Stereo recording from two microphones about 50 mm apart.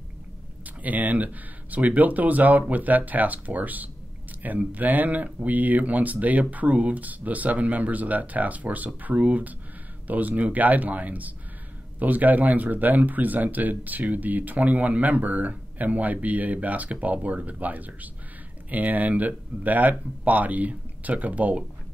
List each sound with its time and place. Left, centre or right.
0.7 s speech: right